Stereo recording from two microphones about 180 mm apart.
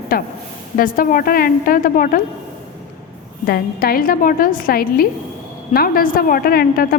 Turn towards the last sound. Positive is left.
turn(degrees=55)  # may be behind; listen again after turning